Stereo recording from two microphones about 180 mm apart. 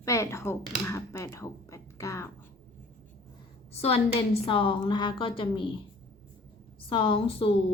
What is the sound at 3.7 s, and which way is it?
A woman's voice, 35° left (ahead or behind).